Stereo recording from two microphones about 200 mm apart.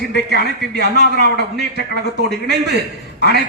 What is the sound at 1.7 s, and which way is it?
A man's voice, 55° right (ahead or behind).